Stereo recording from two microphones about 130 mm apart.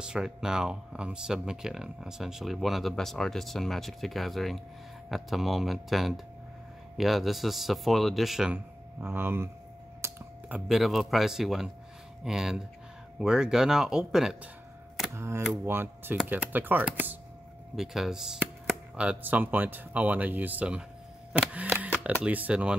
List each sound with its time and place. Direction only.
0.0 s speech: 5° right (ahead or behind)
10.0 s computer keyboard: 20° right (ahead or behind)
10.7 s speech: centre (ahead or behind)
15.1 s speech: 20° right (ahead or behind)
17.7 s speech: 5° right (ahead or behind)
21.3 s camera: 10° right (ahead or behind)
22.0 s speech: 10° right (ahead or behind)